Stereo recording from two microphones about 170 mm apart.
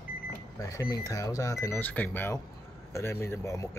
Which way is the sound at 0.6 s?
20° left (ahead or behind).